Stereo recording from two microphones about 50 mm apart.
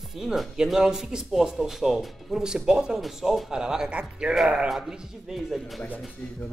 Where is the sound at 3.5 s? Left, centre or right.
Centre.